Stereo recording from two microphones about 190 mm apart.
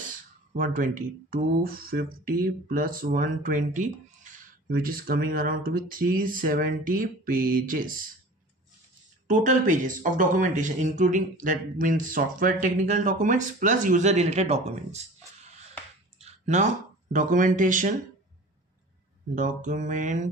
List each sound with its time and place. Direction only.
0.0 s speech: 45° right (ahead or behind)
9.3 s speech: 40° right (ahead or behind)
16.2 s a sound: 35° right (ahead or behind)
17.1 s speech: 45° right (ahead or behind)
19.3 s speech: 45° right (ahead or behind)